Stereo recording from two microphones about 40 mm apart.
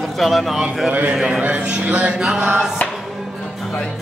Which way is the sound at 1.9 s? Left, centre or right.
Right.